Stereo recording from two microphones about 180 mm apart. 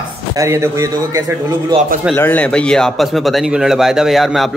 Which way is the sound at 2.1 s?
10° left (ahead or behind).